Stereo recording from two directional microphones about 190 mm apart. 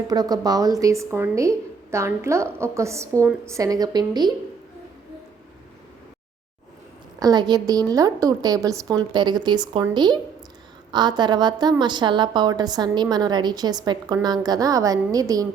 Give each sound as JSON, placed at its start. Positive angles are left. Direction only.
{"t": 0.1, "sound": "a woman's voice", "side_deg": -20}
{"t": 7.2, "sound": "a woman's voice", "side_deg": -20}